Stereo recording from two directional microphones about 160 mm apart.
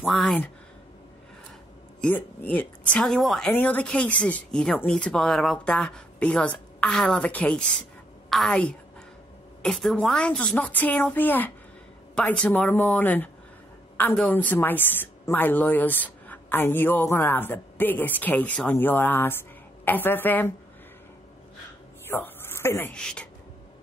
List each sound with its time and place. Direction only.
0.0 s a woman's voice: centre (ahead or behind)
2.0 s a woman's voice: 10° left (ahead or behind)
22.0 s speech: 15° left (ahead or behind)